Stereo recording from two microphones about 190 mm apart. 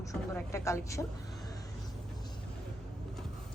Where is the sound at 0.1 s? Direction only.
15° left (ahead or behind).